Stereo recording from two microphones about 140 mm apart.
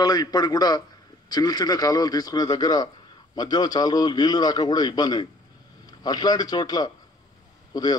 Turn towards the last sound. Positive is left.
turn(degrees=30)  # may be behind; listen again after turning